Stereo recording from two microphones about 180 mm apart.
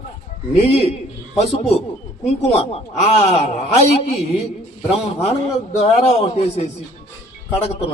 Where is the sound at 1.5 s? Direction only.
35° left (ahead or behind).